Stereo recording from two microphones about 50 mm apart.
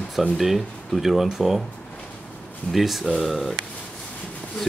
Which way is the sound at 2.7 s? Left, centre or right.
Centre.